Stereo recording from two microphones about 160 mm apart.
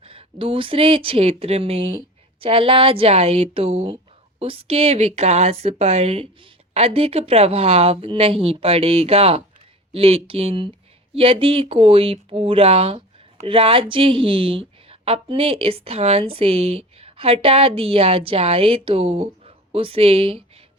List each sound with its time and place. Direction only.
0.0 s a woman's voice: 35° right (ahead or behind)